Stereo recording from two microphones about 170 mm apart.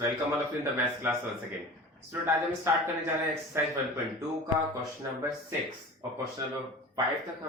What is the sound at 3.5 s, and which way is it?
Speech, 15° right (ahead or behind).